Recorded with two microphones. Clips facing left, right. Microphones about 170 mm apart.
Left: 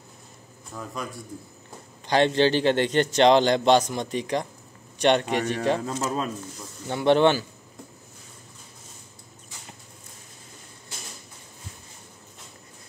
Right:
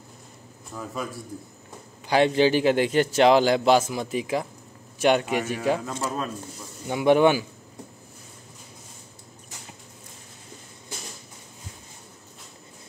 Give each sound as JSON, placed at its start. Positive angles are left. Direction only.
{"t": 0.7, "sound": "a man's voice", "side_deg": 0}
{"t": 5.9, "sound": "speech", "side_deg": 25}
{"t": 6.9, "sound": "a man's voice", "side_deg": -10}